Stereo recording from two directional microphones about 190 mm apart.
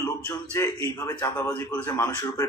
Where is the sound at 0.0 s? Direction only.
15° left (ahead or behind).